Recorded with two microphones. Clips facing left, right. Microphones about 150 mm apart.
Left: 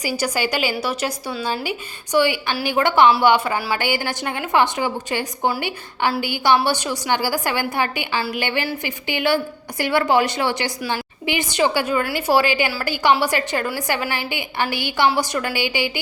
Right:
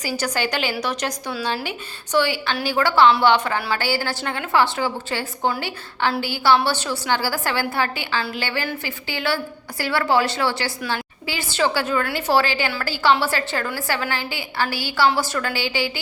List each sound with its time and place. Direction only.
0.0 s a woman's voice: 10° left (ahead or behind)